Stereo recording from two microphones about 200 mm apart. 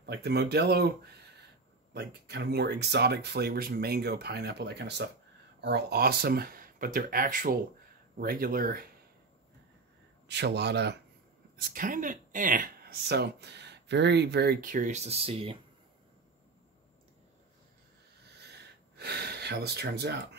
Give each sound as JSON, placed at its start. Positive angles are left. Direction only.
{"t": 0.0, "sound": "speech", "side_deg": -55}
{"t": 2.0, "sound": "speech", "side_deg": -55}
{"t": 10.2, "sound": "speech", "side_deg": -55}
{"t": 11.5, "sound": "speech", "side_deg": -45}
{"t": 18.9, "sound": "speech", "side_deg": -55}